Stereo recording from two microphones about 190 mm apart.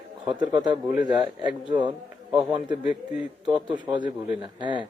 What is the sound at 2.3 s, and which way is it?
A man's voice, 5° right (ahead or behind).